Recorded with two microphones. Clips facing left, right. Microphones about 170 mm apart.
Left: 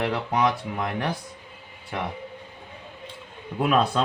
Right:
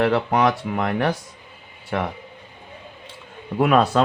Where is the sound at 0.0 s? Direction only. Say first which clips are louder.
Right 5 dB; 75° right (ahead or behind).